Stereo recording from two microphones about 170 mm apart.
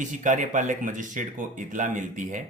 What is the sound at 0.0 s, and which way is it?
Speech, 45° right (ahead or behind).